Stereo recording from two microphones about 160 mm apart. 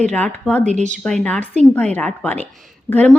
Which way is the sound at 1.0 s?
5° left (ahead or behind).